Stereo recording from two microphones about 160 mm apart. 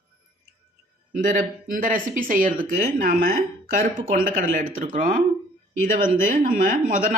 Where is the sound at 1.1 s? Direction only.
55° right (ahead or behind).